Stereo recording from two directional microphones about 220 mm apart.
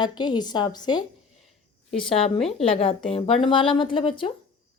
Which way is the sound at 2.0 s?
25° left (ahead or behind).